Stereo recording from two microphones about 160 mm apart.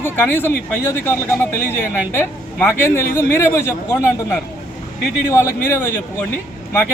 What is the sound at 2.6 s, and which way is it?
Speech, 15° left (ahead or behind).